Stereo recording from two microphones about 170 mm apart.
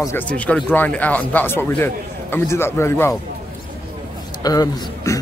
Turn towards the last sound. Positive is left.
turn(degrees=20)  # may be behind; listen again after turning